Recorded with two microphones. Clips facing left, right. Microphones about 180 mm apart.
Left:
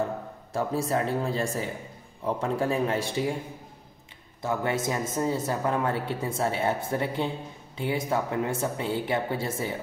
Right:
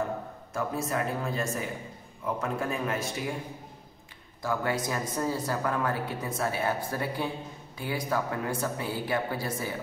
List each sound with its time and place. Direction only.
0.5 s a man's voice: 30° left (ahead or behind)
4.4 s a man's voice: 25° left (ahead or behind)